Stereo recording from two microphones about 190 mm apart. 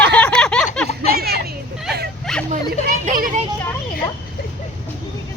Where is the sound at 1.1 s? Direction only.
55° right (ahead or behind).